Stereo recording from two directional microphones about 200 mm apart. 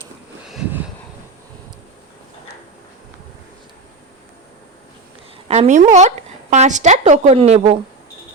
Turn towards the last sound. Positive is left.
turn(degrees=-30)  # may be behind; listen again after turning